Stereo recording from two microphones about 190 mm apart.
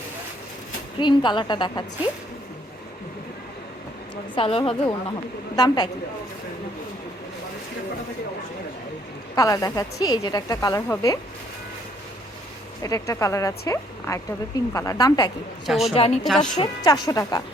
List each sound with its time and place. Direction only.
0.9 s a woman's voice: 25° left (ahead or behind)
4.4 s a woman's voice: 30° left (ahead or behind)
9.3 s a woman's voice: 20° left (ahead or behind)
12.8 s a woman's voice: 15° left (ahead or behind)
15.6 s a woman's voice: centre (ahead or behind)
15.9 s a woman's voice: 30° left (ahead or behind)